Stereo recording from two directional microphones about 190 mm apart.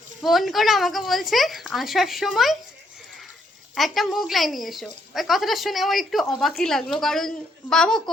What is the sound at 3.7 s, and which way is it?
Speech, centre (ahead or behind).